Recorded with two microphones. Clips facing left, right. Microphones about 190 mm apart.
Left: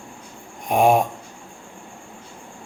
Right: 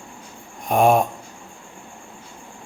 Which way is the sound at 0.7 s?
10° left (ahead or behind).